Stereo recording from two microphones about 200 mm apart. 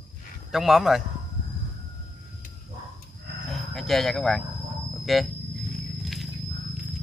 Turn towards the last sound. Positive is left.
turn(degrees=0)  # may be behind; listen again after turning